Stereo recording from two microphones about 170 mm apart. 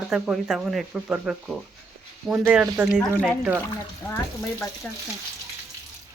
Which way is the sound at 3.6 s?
15° left (ahead or behind).